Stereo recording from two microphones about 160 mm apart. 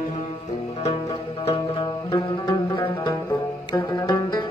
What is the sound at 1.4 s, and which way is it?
Music, 35° left (ahead or behind).